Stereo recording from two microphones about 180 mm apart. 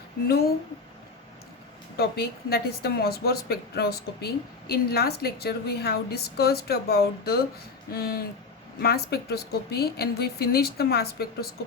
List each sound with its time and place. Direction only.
0.3 s a woman's voice: 60° left (ahead or behind)
2.0 s a woman's voice: 60° left (ahead or behind)